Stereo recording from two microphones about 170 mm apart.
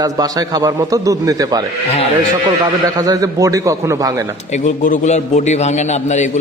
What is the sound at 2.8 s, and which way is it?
A man's voice, 20° right (ahead or behind).